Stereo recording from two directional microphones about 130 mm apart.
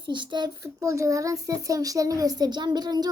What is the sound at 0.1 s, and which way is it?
A child's voice, 35° right (ahead or behind).